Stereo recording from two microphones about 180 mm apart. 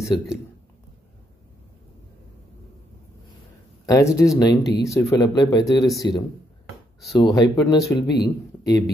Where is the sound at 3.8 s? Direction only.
20° left (ahead or behind).